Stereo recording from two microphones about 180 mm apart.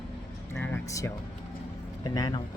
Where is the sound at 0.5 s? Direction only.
10° left (ahead or behind).